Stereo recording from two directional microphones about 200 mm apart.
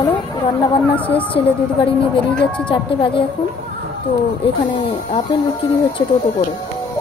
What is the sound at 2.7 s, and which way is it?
Speech, 25° left (ahead or behind).